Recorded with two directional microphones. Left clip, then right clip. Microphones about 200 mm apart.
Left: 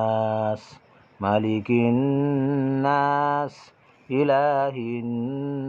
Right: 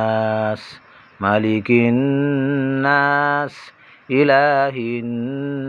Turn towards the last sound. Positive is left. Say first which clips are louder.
# right 4 dB
turn(degrees=-10)  # may be behind; listen again after turning